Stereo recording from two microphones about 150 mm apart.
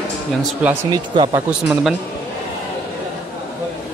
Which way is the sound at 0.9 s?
25° right (ahead or behind).